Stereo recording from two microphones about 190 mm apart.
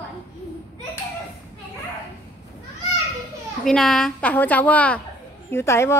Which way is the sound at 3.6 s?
Centre (ahead or behind).